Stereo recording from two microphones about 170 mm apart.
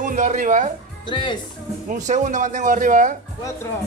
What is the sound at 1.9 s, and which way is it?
Speech, 45° right (ahead or behind).